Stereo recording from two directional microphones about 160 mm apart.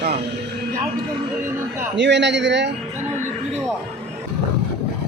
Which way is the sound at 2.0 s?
90° right.